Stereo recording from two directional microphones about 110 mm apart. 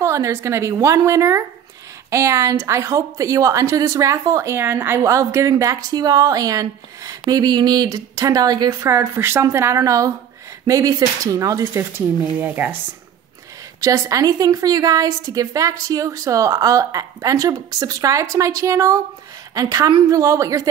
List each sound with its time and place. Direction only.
0.0 s a woman's voice: 25° right (ahead or behind)
12.4 s a woman's voice: 20° right (ahead or behind)
13.7 s a woman's voice: 30° right (ahead or behind)